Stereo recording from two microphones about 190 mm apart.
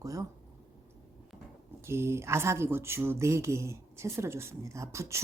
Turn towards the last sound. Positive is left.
turn(degrees=-15)  # may be behind; listen again after turning